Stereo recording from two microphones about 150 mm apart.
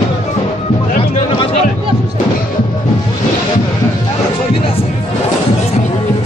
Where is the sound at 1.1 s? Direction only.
45° left (ahead or behind).